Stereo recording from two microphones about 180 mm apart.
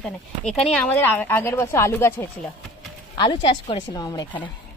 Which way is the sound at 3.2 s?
25° left (ahead or behind).